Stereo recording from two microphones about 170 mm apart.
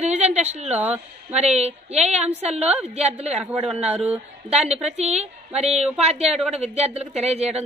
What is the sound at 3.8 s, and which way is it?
A woman's voice, 40° right (ahead or behind).